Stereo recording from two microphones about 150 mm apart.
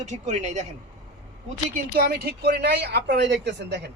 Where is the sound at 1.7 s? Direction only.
75° right (ahead or behind); by 3.2 s 90° right.